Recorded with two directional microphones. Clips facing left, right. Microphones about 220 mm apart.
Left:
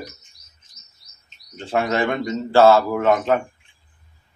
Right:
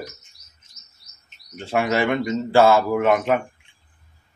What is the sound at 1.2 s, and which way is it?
Speech, 10° right (ahead or behind).